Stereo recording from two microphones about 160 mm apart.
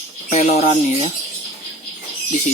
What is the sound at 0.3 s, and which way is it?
Speech, 45° left (ahead or behind).